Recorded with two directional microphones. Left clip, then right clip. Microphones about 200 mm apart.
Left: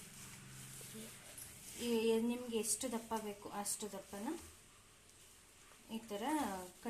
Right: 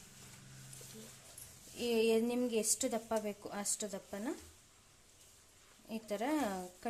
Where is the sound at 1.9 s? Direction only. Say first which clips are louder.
Right 4 dB; 50° right (ahead or behind).